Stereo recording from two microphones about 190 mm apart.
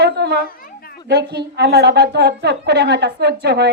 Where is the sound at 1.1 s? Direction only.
60° right (ahead or behind).